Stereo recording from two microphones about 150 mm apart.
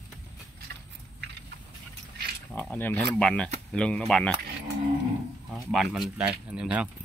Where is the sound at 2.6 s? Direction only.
10° left (ahead or behind).